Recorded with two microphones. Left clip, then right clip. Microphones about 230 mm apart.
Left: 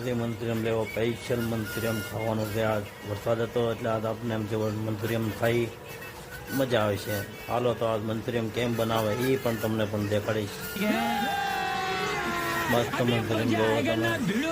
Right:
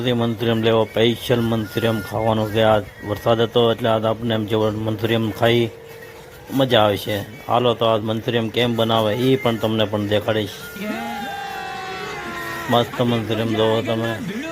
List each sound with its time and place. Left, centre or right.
0.0 s speech: right
10.8 s music: centre
12.8 s speech: centre